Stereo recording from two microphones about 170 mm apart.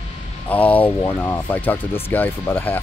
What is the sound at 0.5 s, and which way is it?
Speech, 10° left (ahead or behind).